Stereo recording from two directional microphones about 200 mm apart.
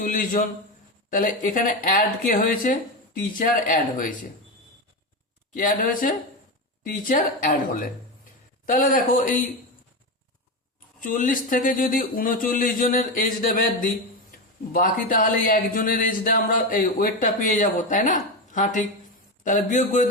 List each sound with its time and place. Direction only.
0.0 s speech: 45° left (ahead or behind)
5.5 s speech: 40° left (ahead or behind)
8.6 s speech: 40° left (ahead or behind)
11.0 s speech: 40° left (ahead or behind)